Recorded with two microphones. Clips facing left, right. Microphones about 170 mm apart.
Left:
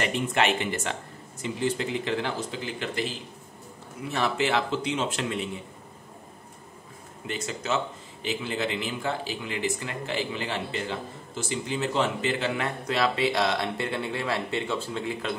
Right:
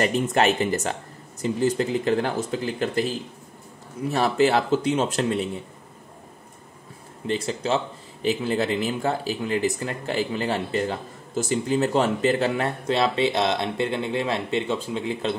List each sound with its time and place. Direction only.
0.0 s speech: 40° right (ahead or behind)
7.2 s speech: 30° right (ahead or behind)